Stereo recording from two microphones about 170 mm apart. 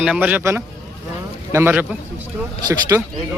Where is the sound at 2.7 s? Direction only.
20° right (ahead or behind).